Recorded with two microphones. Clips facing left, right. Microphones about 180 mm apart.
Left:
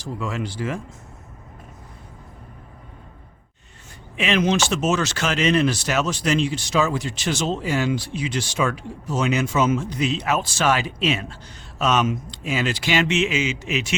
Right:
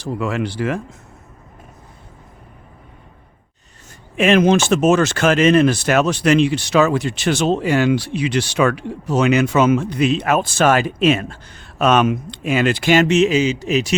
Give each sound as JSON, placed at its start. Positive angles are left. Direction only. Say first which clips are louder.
{"t": 0.0, "sound": "speech", "louder": "right 6 dB", "side_deg": -65}
{"t": 4.2, "sound": "speech", "louder": "right 7 dB", "side_deg": -50}